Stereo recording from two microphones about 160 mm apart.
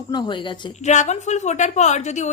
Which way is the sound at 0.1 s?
30° left (ahead or behind).